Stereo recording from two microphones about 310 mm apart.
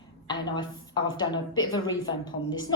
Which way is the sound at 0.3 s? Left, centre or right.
Centre.